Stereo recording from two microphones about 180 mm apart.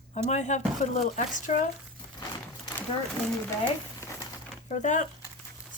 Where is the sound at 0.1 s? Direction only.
40° left (ahead or behind).